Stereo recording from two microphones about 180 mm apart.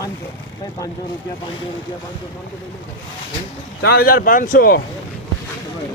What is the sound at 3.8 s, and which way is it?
Speech, 55° left (ahead or behind).